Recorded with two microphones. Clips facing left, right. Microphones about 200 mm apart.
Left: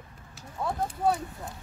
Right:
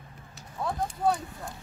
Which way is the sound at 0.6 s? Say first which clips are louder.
Even; 5° left (ahead or behind).